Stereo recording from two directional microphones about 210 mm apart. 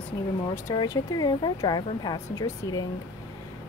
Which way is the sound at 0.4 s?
15° left (ahead or behind).